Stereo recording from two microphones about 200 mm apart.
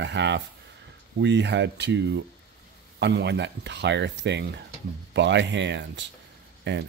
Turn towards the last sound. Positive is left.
turn(degrees=-65)  # may be behind; listen again after turning